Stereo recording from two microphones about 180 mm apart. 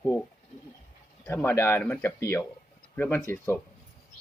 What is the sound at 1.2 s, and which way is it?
Speech, 15° left (ahead or behind).